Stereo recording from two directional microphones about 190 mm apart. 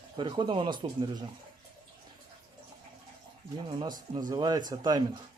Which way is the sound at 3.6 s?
20° right (ahead or behind).